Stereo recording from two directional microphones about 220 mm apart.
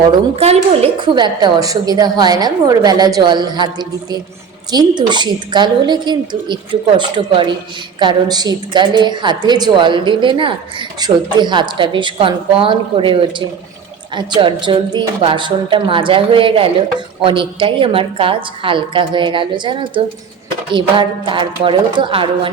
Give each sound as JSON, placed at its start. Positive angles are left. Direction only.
{"t": 0.1, "sound": "a woman's voice", "side_deg": -30}